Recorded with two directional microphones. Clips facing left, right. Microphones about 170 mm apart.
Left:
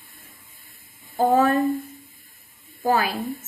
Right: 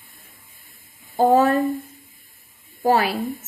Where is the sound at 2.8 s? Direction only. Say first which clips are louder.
Right 3 dB; 30° right (ahead or behind).